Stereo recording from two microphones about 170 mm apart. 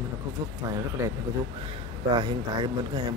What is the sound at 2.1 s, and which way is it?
Speech, 25° right (ahead or behind).